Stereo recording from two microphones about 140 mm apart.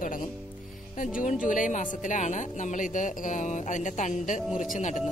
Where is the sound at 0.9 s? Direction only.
75° left (ahead or behind).